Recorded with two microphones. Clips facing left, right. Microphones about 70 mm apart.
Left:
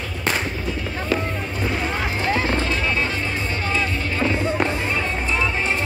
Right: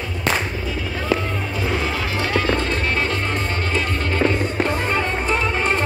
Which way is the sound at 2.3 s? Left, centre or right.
Right.